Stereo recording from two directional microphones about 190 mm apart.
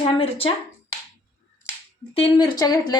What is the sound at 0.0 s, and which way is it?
Speech, 30° left (ahead or behind).